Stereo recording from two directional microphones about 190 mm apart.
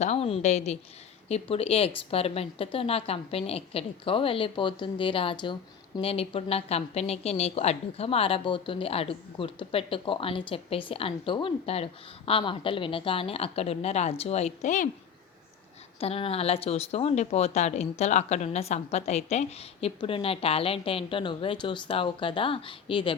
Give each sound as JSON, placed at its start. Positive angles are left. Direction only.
{"t": 0.0, "sound": "a woman's voice", "side_deg": 35}
{"t": 16.0, "sound": "a woman's voice", "side_deg": 30}